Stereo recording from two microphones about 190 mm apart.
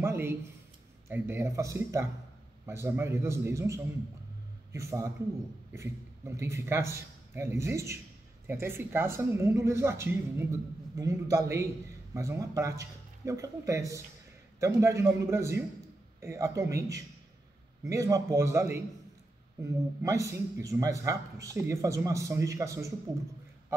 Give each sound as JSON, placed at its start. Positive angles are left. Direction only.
{"t": 0.0, "sound": "a man's voice", "side_deg": -15}